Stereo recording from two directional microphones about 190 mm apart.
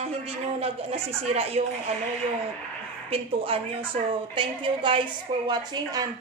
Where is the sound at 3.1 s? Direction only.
30° right (ahead or behind).